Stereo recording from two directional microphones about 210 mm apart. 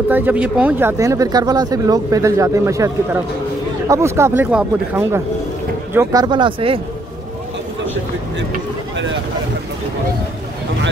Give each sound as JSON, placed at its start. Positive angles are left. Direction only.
{"t": 0.1, "sound": "speech", "side_deg": -10}
{"t": 5.9, "sound": "speech", "side_deg": -20}